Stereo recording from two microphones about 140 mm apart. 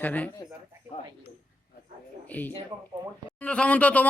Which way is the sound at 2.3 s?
10° left (ahead or behind).